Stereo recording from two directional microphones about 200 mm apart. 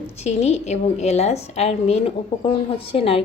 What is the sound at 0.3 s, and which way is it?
A woman's voice, 30° left (ahead or behind).